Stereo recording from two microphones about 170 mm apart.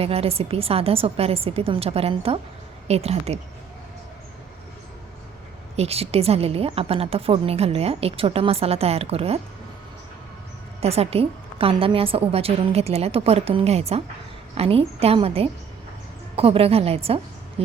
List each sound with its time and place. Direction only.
0.0 s a woman's voice: 35° right (ahead or behind)
5.7 s a woman's voice: 35° right (ahead or behind)
10.8 s a woman's voice: 35° right (ahead or behind)